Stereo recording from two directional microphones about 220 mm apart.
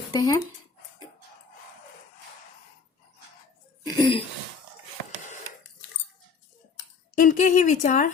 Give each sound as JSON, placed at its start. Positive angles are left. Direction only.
{"t": 0.1, "sound": "speech", "side_deg": 15}
{"t": 3.8, "sound": "speech", "side_deg": 20}
{"t": 7.2, "sound": "a woman's voice", "side_deg": 35}